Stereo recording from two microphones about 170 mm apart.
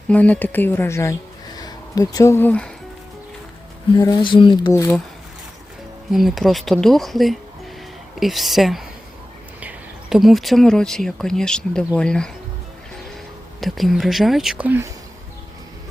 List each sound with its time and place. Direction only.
0.1 s speech: 10° left (ahead or behind)
3.9 s speech: 25° left (ahead or behind)
6.1 s speech: centre (ahead or behind)
13.6 s speech: centre (ahead or behind)